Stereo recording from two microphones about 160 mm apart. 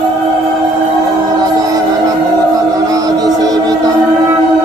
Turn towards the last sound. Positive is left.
turn(degrees=-20)  # may be behind; listen again after turning